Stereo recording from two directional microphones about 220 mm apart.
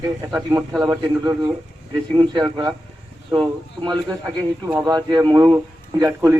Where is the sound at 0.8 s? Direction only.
15° right (ahead or behind).